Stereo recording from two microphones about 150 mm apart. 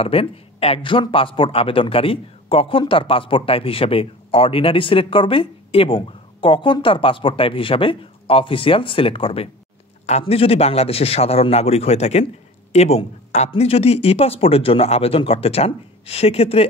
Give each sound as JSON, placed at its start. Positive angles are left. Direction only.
{"t": 0.0, "sound": "a man's voice", "side_deg": 40}